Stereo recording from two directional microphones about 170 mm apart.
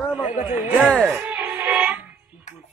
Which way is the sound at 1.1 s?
10° right (ahead or behind).